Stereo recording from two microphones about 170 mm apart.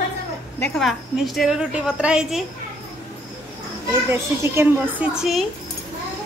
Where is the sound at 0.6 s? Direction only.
Centre (ahead or behind).